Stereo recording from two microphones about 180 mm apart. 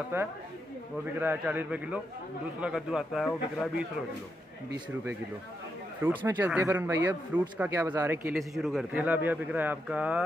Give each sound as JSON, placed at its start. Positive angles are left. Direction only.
{"t": 0.1, "sound": "a man's voice", "side_deg": -15}
{"t": 6.0, "sound": "speech", "side_deg": -10}
{"t": 8.4, "sound": "speech", "side_deg": 0}